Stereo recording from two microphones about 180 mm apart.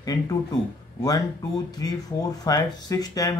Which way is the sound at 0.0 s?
20° left (ahead or behind).